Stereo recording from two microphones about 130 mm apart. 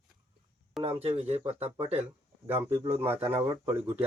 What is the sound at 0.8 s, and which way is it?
Speech, 50° right (ahead or behind).